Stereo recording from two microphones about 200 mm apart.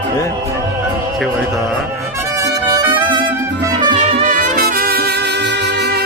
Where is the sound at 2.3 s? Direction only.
20° right (ahead or behind).